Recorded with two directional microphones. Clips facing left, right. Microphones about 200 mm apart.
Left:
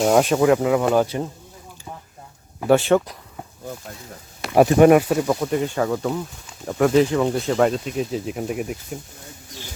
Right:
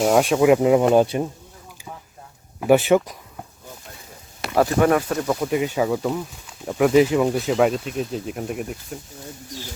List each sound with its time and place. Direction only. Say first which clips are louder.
0.0 s speech: left 1 dB; centre (ahead or behind)
0.4 s speech: right 2 dB; 20° right (ahead or behind)
2.6 s speech: right 1 dB; 10° right (ahead or behind)
4.5 s speech: left 5 dB; 20° left (ahead or behind)
5.2 s speech: even; centre (ahead or behind)